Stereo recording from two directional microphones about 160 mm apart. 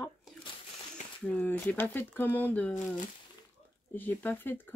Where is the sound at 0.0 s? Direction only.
Centre (ahead or behind).